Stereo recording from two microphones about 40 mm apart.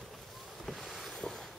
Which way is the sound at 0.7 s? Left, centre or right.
Centre.